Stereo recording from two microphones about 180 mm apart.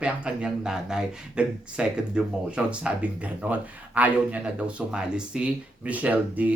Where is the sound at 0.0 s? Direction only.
5° right (ahead or behind).